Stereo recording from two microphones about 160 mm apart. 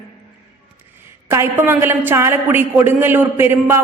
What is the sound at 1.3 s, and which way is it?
A man's voice, 15° right (ahead or behind).